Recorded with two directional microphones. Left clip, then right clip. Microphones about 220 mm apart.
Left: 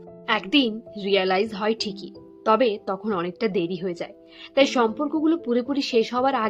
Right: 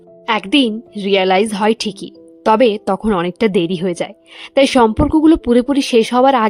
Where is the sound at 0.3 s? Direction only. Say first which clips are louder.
Right 7 dB; 50° right (ahead or behind).